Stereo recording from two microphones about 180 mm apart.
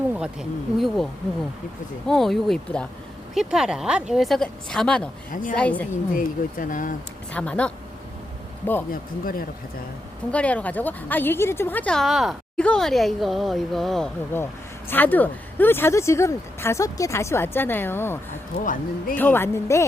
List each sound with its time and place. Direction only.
0.1 s a woman's voice: 5° right (ahead or behind)
2.0 s a woman's voice: centre (ahead or behind)
5.3 s speech: 45° left (ahead or behind)
5.5 s speech: 10° left (ahead or behind)
5.9 s speech: 45° left (ahead or behind)
7.3 s speech: 5° left (ahead or behind)
8.9 s speech: 50° left (ahead or behind)
10.3 s a woman's voice: 5° left (ahead or behind)
14.3 s speech: 15° left (ahead or behind)
18.6 s speech: 45° left (ahead or behind)
19.1 s speech: 10° left (ahead or behind)